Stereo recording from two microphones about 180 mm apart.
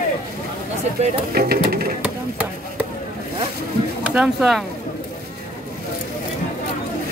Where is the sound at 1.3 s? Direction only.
60° right (ahead or behind).